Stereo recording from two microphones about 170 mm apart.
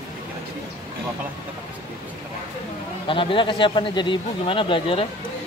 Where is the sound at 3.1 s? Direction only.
30° left (ahead or behind).